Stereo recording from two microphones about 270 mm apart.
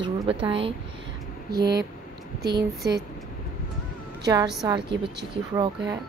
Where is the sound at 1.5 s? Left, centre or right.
Right.